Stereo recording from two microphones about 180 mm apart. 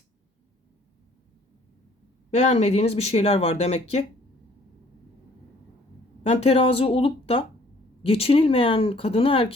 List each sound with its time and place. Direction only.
2.3 s speech: 40° left (ahead or behind)
6.2 s speech: 35° left (ahead or behind)